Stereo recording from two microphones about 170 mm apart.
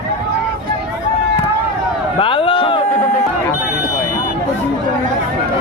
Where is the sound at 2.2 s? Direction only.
30° left (ahead or behind).